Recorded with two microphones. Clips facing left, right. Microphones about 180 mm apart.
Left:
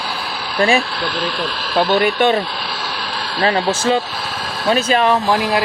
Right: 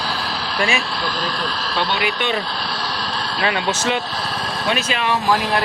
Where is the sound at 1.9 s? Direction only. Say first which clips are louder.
Left 10 dB; 45° left (ahead or behind).